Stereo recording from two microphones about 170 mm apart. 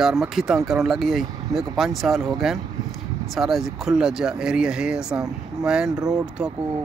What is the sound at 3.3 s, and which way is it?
Speech, centre (ahead or behind).